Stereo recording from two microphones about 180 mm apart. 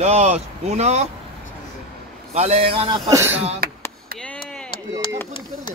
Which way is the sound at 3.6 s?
55° right (ahead or behind).